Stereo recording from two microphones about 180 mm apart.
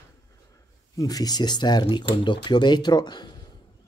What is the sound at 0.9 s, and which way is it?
Speech, 20° left (ahead or behind).